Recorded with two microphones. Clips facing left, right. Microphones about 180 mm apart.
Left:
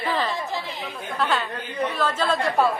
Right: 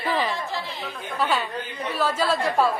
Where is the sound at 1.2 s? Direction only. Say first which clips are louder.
Even; 10° right (ahead or behind).